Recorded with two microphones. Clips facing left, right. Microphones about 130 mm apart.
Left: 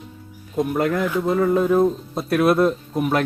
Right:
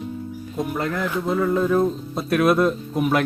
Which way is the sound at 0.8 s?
20° left (ahead or behind).